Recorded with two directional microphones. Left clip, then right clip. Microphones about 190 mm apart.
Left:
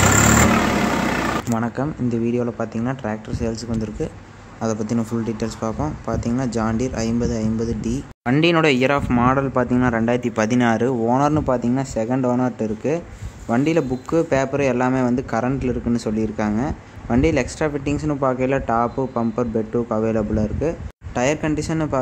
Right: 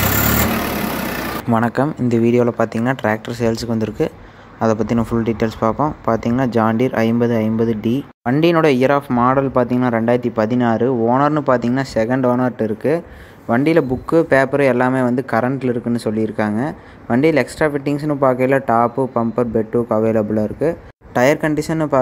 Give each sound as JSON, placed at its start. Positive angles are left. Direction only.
{"t": 1.5, "sound": "a man's voice", "side_deg": -15}
{"t": 9.8, "sound": "speech", "side_deg": -20}
{"t": 10.3, "sound": "a man's voice", "side_deg": -10}